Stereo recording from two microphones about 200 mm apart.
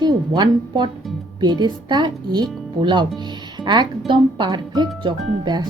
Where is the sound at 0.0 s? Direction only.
20° right (ahead or behind).